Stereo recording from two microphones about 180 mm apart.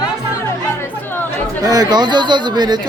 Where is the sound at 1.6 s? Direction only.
20° right (ahead or behind).